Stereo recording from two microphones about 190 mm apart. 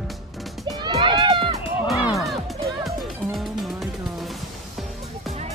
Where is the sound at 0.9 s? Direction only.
30° right (ahead or behind).